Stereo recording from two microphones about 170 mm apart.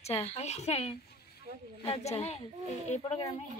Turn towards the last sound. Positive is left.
turn(degrees=40)  # may be behind; listen again after turning